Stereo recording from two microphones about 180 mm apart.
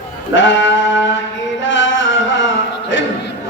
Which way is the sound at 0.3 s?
90° left.